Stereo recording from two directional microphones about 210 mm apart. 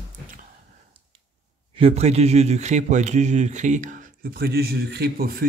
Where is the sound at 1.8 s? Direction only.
30° right (ahead or behind).